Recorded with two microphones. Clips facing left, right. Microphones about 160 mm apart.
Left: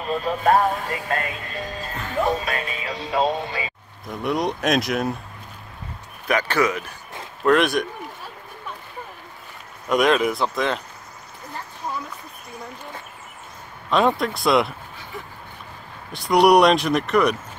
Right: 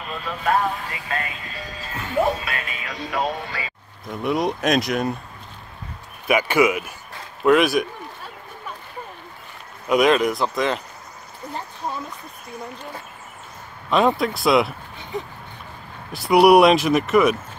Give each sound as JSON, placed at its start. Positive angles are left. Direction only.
{"t": 0.2, "sound": "music", "side_deg": 45}
{"t": 2.4, "sound": "speech", "side_deg": 35}
{"t": 4.1, "sound": "speech", "side_deg": 0}
{"t": 6.2, "sound": "speech", "side_deg": -10}
{"t": 9.8, "sound": "speech", "side_deg": 0}
{"t": 13.8, "sound": "speech", "side_deg": 0}
{"t": 16.1, "sound": "speech", "side_deg": -5}